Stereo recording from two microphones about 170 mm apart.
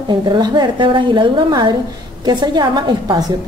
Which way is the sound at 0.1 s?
25° right (ahead or behind).